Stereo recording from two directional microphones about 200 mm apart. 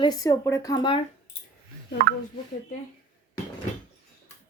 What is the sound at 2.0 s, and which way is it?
Speech, 50° right (ahead or behind).